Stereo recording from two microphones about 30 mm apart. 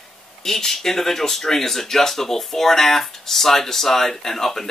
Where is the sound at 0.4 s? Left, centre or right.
Centre.